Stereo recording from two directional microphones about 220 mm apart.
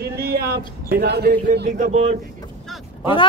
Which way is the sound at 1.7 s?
30° right (ahead or behind).